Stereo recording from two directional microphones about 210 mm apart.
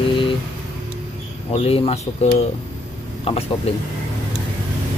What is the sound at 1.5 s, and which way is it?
Speech, 25° left (ahead or behind).